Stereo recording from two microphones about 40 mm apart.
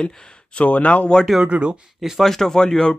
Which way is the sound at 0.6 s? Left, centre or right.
Left.